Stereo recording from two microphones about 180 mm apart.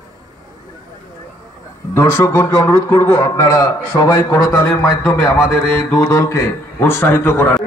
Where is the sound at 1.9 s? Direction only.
15° left (ahead or behind).